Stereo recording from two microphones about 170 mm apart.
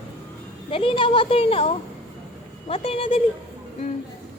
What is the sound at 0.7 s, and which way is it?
A woman's voice, 30° left (ahead or behind).